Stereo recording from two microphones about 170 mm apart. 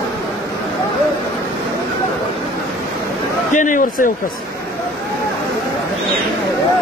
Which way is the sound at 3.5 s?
50° left (ahead or behind).